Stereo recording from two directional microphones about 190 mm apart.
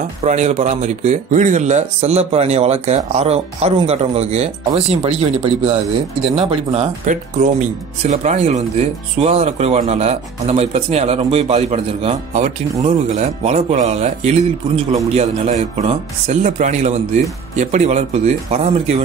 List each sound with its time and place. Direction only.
0.2 s speech: 35° right (ahead or behind)